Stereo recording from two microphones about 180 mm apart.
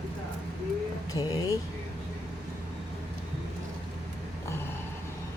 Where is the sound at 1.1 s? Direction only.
20° left (ahead or behind).